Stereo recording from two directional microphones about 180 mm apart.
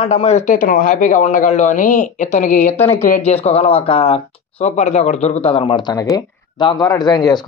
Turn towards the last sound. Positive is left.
turn(degrees=20)  # may be behind; listen again after turning